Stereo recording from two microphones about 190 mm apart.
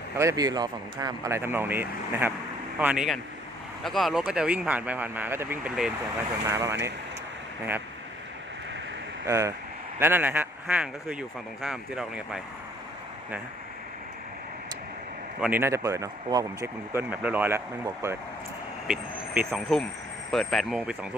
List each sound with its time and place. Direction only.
0.2 s speech: 15° right (ahead or behind)
9.2 s speech: 15° right (ahead or behind)
15.4 s speech: 10° right (ahead or behind)